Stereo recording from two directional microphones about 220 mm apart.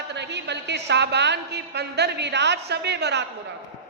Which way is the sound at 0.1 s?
50° right (ahead or behind).